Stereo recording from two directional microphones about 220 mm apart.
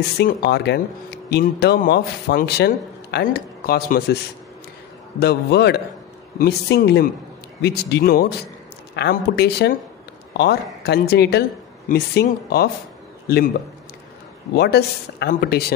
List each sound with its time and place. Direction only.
0.2 s speech: 50° left (ahead or behind)
5.2 s speech: 50° left (ahead or behind)
14.5 s speech: 45° left (ahead or behind)